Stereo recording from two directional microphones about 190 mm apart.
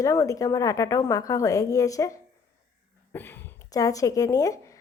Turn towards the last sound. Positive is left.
turn(degrees=15)  # may be behind; listen again after turning